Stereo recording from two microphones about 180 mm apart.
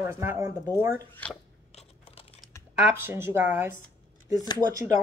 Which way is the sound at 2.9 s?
15° right (ahead or behind).